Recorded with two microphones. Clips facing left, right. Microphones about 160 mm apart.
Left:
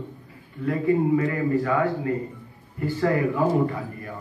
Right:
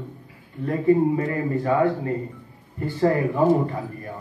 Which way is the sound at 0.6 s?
35° right (ahead or behind).